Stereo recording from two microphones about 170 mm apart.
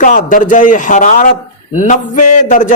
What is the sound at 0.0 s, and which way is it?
A man's voice, 50° left (ahead or behind).